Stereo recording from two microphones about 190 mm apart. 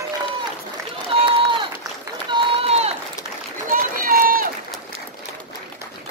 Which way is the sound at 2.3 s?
30° right (ahead or behind).